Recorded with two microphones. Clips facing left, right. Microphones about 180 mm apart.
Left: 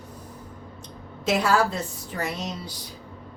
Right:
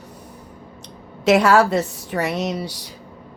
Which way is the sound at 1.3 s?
75° right (ahead or behind).